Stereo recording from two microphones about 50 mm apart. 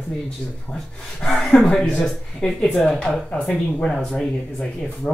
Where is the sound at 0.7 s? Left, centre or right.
Left.